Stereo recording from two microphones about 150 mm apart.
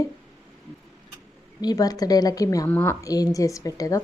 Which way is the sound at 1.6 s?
25° left (ahead or behind).